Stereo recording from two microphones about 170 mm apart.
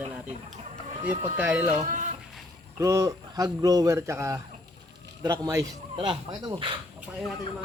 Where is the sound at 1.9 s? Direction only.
45° right (ahead or behind).